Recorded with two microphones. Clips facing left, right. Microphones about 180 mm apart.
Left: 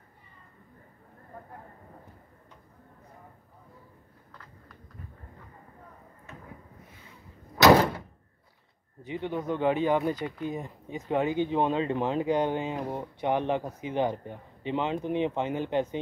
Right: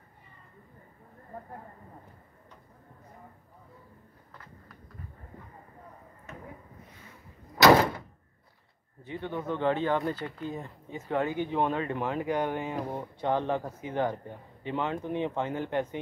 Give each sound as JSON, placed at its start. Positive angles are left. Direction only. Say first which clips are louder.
{"t": 9.0, "sound": "speech", "louder": "left 3 dB", "side_deg": 15}